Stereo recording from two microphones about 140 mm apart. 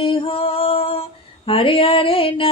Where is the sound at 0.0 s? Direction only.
40° left (ahead or behind).